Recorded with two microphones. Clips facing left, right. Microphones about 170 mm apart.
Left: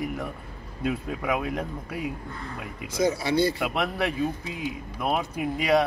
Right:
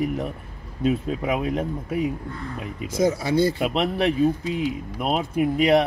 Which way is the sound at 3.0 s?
45° right (ahead or behind).